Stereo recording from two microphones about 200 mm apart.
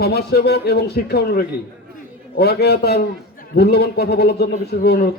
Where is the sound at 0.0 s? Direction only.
55° left (ahead or behind).